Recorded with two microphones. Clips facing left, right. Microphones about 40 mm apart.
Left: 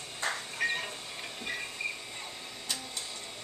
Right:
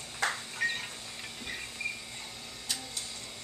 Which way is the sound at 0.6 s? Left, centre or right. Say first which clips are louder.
Left 1 dB; centre.